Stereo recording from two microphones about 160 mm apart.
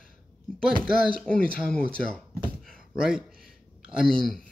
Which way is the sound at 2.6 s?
5° right (ahead or behind).